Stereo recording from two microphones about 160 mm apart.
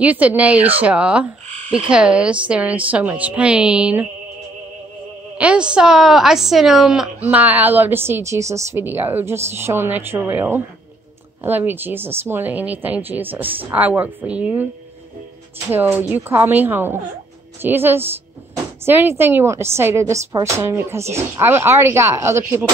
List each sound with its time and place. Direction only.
0.0 s a woman's voice: 10° right (ahead or behind)
5.4 s a woman's voice: 5° right (ahead or behind)
15.7 s a woman's voice: 10° right (ahead or behind)